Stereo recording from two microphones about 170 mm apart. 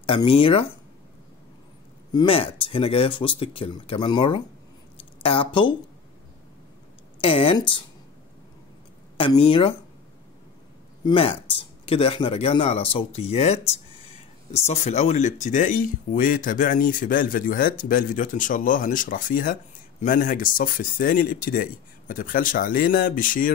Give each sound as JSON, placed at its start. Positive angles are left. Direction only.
{"t": 0.0, "sound": "speech", "side_deg": 30}
{"t": 2.1, "sound": "speech", "side_deg": 30}
{"t": 7.2, "sound": "speech", "side_deg": 35}
{"t": 9.1, "sound": "speech", "side_deg": 30}
{"t": 11.1, "sound": "speech", "side_deg": 30}